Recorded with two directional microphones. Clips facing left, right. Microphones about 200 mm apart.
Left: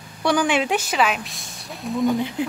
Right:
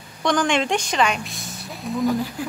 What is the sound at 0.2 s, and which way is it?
A woman's voice, 10° left (ahead or behind).